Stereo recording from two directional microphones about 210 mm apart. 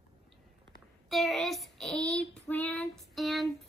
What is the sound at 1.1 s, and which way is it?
Child singing, centre (ahead or behind).